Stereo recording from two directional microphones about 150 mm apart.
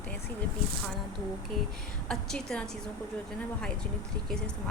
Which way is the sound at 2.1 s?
5° left (ahead or behind).